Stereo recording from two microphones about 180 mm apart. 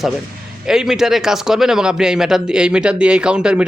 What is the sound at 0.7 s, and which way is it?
A man's voice, 5° right (ahead or behind).